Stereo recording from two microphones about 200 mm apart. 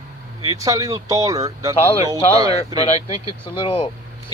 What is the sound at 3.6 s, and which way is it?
Speech, 25° left (ahead or behind).